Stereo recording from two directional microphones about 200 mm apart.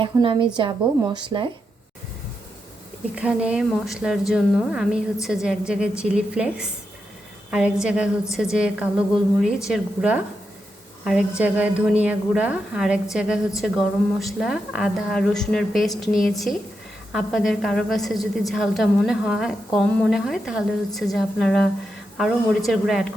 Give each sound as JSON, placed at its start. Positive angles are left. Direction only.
{"t": 0.0, "sound": "speech", "side_deg": -25}
{"t": 3.2, "sound": "a woman's voice", "side_deg": -5}